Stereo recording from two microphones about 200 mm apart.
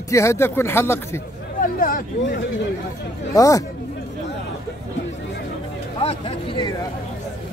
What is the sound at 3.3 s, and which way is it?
Speech, 15° left (ahead or behind).